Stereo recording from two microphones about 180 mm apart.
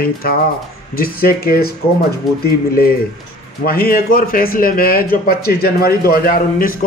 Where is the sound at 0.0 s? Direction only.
55° left (ahead or behind).